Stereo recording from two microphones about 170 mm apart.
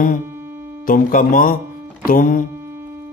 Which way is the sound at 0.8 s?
55° left (ahead or behind).